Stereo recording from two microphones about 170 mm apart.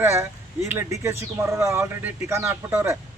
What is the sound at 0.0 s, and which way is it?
Speech, 15° right (ahead or behind).